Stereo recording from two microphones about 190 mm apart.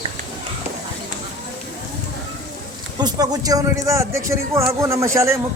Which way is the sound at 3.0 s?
20° right (ahead or behind).